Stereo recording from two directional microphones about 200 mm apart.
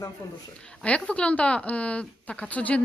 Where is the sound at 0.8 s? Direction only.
5° left (ahead or behind).